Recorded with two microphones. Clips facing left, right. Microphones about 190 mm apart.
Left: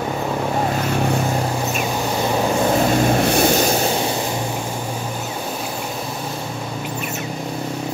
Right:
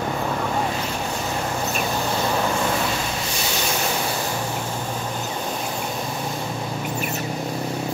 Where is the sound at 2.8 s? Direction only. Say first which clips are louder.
Left 10 dB; 50° left (ahead or behind).